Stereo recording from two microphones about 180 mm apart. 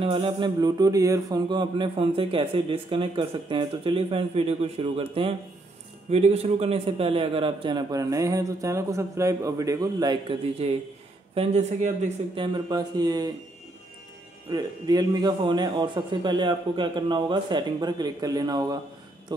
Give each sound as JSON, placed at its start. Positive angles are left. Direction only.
{"t": 0.0, "sound": "speech", "side_deg": -30}
{"t": 10.4, "sound": "speech", "side_deg": -35}
{"t": 12.5, "sound": "speech", "side_deg": -25}
{"t": 14.5, "sound": "speech", "side_deg": -20}